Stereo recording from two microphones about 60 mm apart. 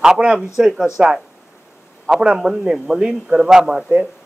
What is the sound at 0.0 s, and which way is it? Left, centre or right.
A man's voice, centre.